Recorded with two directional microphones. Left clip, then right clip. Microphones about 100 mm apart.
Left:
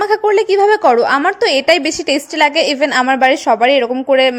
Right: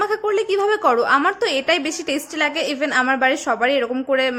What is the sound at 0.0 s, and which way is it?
A woman's voice, 45° left (ahead or behind).